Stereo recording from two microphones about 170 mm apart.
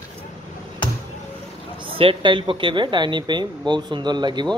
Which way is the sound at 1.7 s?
30° right (ahead or behind).